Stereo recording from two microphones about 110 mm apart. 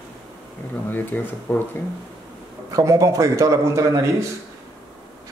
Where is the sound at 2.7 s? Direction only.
30° right (ahead or behind).